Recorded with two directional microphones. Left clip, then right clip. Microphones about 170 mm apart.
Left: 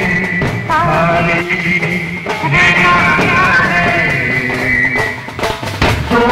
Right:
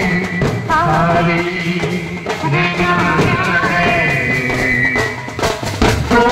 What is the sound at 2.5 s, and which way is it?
Music, 20° left (ahead or behind).